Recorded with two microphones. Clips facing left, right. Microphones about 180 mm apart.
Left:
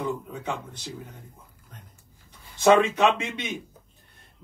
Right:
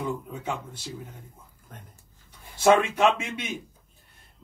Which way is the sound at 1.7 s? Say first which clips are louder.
Right 4 dB; 50° right (ahead or behind).